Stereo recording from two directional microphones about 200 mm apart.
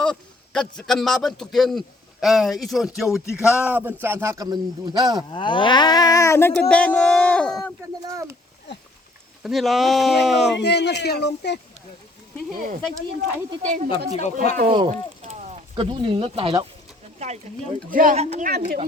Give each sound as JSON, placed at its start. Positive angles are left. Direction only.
{"t": 0.0, "sound": "a man's voice", "side_deg": 5}
{"t": 5.3, "sound": "speech", "side_deg": 25}
{"t": 8.0, "sound": "speech", "side_deg": -15}
{"t": 9.4, "sound": "speech", "side_deg": 0}
{"t": 10.5, "sound": "speech", "side_deg": 55}
{"t": 12.5, "sound": "a woman's voice", "side_deg": -45}
{"t": 14.7, "sound": "a woman's voice", "side_deg": -30}